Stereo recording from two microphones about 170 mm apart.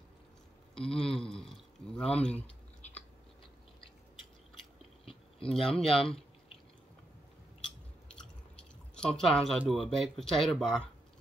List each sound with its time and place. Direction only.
0.7 s speech: 5° left (ahead or behind)
2.8 s a sound: 40° left (ahead or behind)
5.5 s speech: centre (ahead or behind)
7.6 s chewing: 5° left (ahead or behind)
9.6 s speech: centre (ahead or behind)